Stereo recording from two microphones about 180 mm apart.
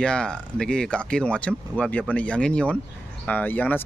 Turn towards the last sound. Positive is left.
turn(degrees=10)  # may be behind; listen again after turning